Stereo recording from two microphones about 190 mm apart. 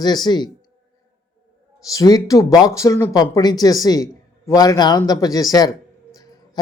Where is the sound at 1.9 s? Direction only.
20° left (ahead or behind).